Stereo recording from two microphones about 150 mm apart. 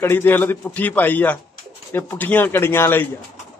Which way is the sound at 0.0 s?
15° left (ahead or behind).